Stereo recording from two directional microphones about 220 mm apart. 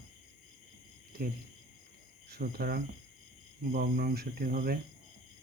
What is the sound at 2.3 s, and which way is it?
Speech, 45° right (ahead or behind).